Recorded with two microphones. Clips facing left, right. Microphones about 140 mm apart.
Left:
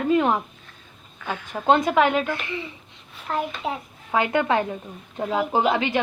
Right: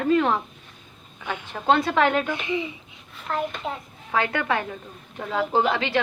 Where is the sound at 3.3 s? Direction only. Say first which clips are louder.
Left 1 dB; 5° left (ahead or behind).